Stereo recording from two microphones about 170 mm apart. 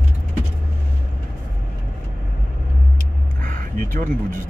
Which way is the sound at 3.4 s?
50° right (ahead or behind).